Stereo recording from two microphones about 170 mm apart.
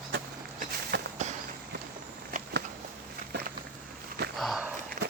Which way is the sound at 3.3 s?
90° right.